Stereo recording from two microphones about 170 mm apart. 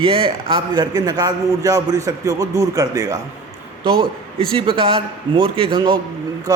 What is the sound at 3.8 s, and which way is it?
A man's voice, 30° right (ahead or behind).